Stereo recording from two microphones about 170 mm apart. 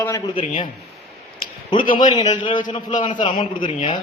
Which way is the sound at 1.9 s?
25° left (ahead or behind).